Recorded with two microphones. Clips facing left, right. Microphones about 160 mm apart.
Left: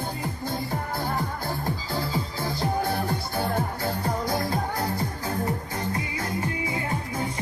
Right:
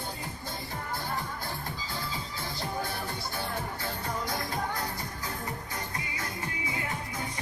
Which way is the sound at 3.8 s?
35° left (ahead or behind).